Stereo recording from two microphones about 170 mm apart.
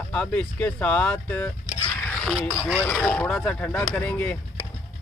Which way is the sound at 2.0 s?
5° left (ahead or behind).